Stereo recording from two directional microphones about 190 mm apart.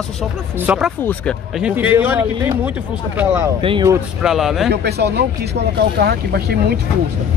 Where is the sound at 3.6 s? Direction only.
25° right (ahead or behind).